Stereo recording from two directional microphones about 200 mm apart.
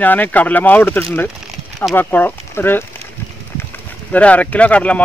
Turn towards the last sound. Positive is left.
turn(degrees=5)  # may be behind; listen again after turning